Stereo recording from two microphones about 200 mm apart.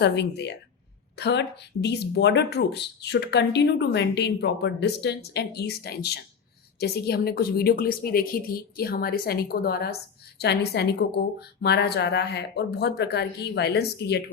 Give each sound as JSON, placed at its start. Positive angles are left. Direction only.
{"t": 0.0, "sound": "speech", "side_deg": 55}